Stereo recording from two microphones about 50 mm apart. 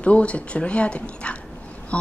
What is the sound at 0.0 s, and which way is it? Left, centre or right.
A woman's voice, left.